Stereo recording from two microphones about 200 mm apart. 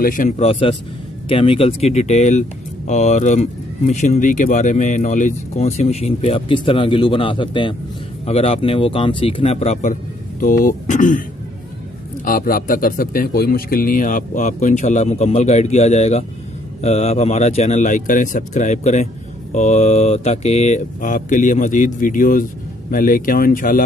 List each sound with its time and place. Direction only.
0.0 s speech: 40° left (ahead or behind)
12.3 s speech: 45° left (ahead or behind)